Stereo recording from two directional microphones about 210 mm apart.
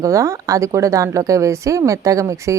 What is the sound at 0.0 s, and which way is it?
Speech, 15° right (ahead or behind).